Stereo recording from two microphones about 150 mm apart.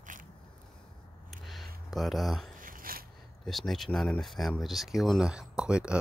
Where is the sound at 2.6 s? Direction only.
70° right (ahead or behind).